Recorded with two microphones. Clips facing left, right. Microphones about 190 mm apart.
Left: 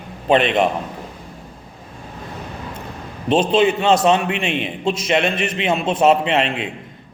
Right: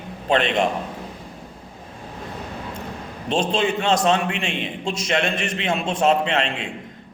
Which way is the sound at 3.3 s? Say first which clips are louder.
Left 6 dB; 5° left (ahead or behind).